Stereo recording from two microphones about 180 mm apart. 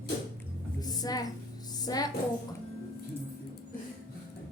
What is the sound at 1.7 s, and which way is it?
Music, 20° left (ahead or behind).